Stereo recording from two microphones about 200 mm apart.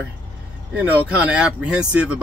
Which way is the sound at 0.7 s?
5° right (ahead or behind).